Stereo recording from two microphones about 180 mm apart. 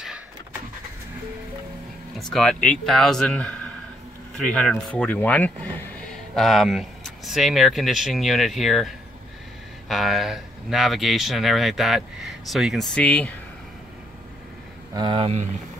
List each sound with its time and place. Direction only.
2.1 s speech: centre (ahead or behind)
15.0 s speech: 25° right (ahead or behind)